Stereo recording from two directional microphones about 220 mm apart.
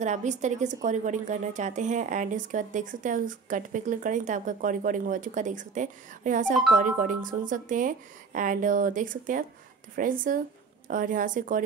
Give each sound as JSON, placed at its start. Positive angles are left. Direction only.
{"t": 0.0, "sound": "speech", "side_deg": -35}